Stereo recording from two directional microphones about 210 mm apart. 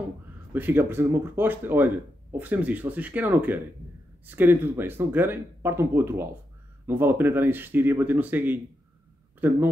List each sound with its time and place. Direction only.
0.5 s speech: 10° right (ahead or behind)